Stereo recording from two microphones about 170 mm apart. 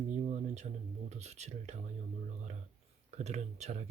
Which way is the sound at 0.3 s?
40° right (ahead or behind).